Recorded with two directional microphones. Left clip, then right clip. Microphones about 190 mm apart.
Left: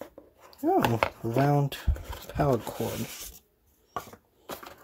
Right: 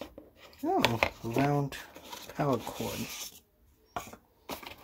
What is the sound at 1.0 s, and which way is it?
Speech, 20° left (ahead or behind).